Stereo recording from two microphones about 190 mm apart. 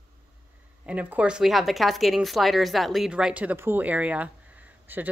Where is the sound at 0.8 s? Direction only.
5° right (ahead or behind).